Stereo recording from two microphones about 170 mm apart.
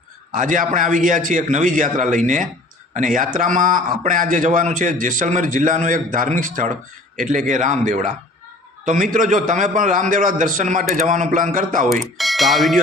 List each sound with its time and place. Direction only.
0.3 s a man's voice: 50° right (ahead or behind)
12.1 s speech: centre (ahead or behind)